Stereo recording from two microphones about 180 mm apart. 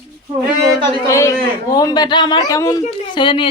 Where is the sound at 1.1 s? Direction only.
15° left (ahead or behind).